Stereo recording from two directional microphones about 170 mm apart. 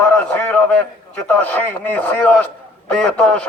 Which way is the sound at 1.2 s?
10° left (ahead or behind).